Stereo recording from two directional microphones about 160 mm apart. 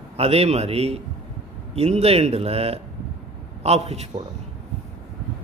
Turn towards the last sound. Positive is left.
turn(degrees=-45)  # may be behind; listen again after turning